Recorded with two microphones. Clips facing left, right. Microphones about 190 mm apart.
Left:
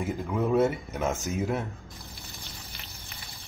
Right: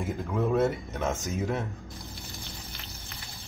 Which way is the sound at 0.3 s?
5° left (ahead or behind).